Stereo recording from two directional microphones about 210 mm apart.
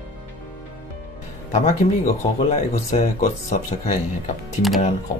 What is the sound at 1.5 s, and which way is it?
Speech, 35° left (ahead or behind).